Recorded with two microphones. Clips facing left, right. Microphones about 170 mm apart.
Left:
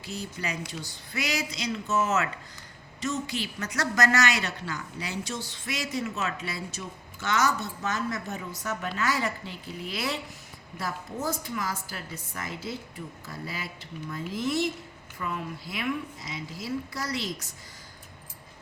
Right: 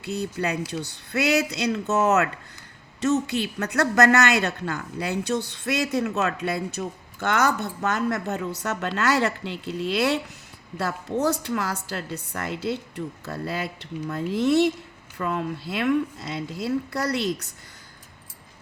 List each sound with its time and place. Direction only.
0.0 s a woman's voice: 65° right (ahead or behind)